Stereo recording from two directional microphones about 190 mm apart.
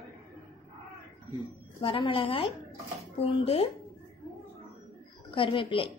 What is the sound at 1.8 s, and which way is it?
A woman's voice, 25° left (ahead or behind).